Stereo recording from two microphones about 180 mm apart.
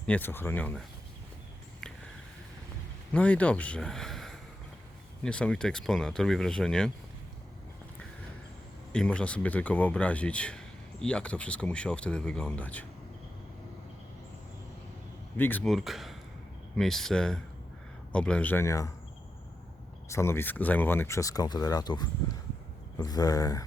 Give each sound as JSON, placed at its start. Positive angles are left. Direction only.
{"t": 0.0, "sound": "speech", "side_deg": 10}
{"t": 1.8, "sound": "a sound", "side_deg": 5}
{"t": 3.1, "sound": "speech", "side_deg": 5}
{"t": 8.9, "sound": "speech", "side_deg": 5}
{"t": 15.4, "sound": "speech", "side_deg": 10}
{"t": 20.1, "sound": "speech", "side_deg": 15}